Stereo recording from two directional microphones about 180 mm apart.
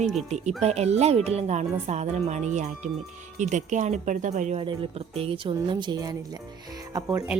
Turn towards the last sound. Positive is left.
turn(degrees=-15)  # may be behind; listen again after turning